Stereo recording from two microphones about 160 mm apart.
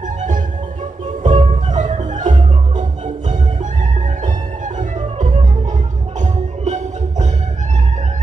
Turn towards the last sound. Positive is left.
turn(degrees=-45)  # may be behind; listen again after turning